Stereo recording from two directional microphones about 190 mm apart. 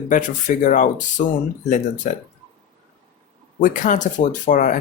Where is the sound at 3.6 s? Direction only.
45° left (ahead or behind).